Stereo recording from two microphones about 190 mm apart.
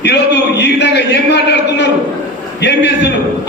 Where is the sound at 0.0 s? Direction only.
65° left (ahead or behind).